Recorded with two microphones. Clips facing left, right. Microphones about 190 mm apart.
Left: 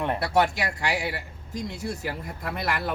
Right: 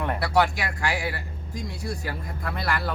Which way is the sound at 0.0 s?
20° left (ahead or behind).